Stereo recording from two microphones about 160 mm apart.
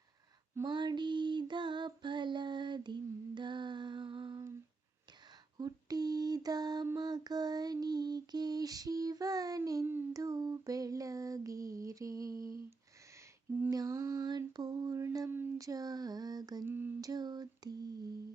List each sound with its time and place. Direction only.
0.5 s female singing: 25° right (ahead or behind)
5.5 s lullaby: 25° right (ahead or behind)
13.6 s female singing: 20° right (ahead or behind)